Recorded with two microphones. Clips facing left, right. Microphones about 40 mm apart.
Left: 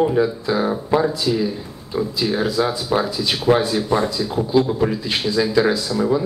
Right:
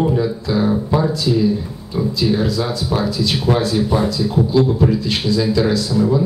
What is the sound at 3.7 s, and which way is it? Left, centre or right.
Speech, centre.